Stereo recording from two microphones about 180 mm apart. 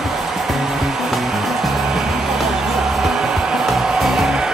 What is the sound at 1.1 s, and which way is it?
Music, centre (ahead or behind).